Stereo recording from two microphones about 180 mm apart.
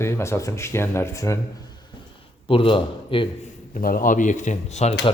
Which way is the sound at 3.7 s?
50° left (ahead or behind).